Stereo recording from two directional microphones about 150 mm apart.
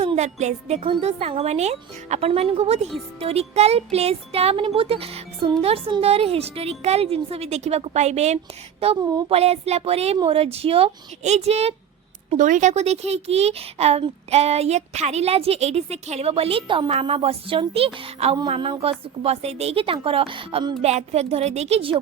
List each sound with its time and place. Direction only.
0.0 s a woman's voice: 45° right (ahead or behind)
12.3 s a woman's voice: 55° right (ahead or behind); by 20.7 s 35° right (ahead or behind)
20.8 s speech: 45° right (ahead or behind)